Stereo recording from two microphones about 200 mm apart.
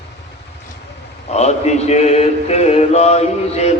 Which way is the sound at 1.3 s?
35° left (ahead or behind).